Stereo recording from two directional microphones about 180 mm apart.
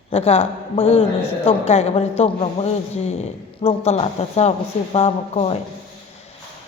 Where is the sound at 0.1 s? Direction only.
35° left (ahead or behind).